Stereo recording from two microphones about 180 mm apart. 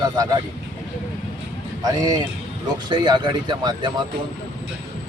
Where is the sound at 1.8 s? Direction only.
20° right (ahead or behind).